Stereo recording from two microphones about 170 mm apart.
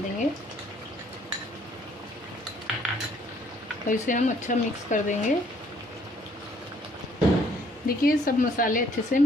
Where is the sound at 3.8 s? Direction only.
50° left (ahead or behind).